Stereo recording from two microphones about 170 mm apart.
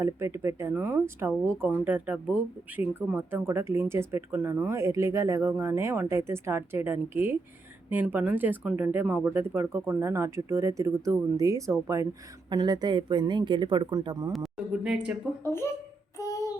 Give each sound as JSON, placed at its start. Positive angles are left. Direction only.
{"t": 0.0, "sound": "speech", "side_deg": -15}
{"t": 14.3, "sound": "speech", "side_deg": 0}
{"t": 15.4, "sound": "speech", "side_deg": 15}
{"t": 16.1, "sound": "child singing", "side_deg": 20}